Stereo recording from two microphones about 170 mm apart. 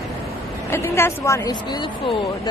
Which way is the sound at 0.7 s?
15° left (ahead or behind).